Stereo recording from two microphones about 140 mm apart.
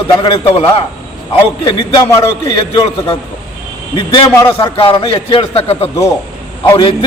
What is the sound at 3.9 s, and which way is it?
A man's voice, 30° left (ahead or behind).